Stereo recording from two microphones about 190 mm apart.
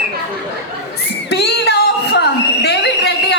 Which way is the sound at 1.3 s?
60° left (ahead or behind).